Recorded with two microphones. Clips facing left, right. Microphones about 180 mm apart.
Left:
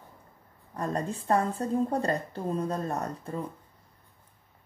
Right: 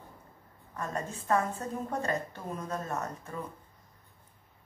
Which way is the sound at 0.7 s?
35° left (ahead or behind).